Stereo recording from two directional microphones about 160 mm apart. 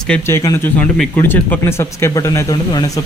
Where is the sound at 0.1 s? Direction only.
15° left (ahead or behind).